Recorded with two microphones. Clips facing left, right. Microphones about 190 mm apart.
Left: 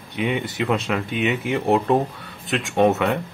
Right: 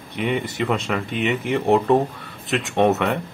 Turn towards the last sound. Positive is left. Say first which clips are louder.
# even
turn(degrees=0)  # may be behind; listen again after turning